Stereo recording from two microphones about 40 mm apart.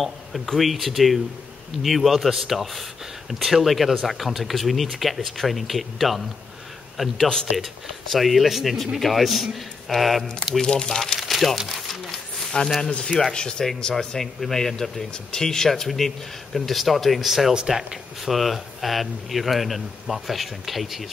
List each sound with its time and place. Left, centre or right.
0.0 s speech: centre
7.2 s speech: centre
8.1 s speech: centre
10.6 s speech: centre
11.1 s speech: centre
11.9 s a sound: centre
13.2 s speech: centre
13.9 s speech: centre
18.3 s speech: centre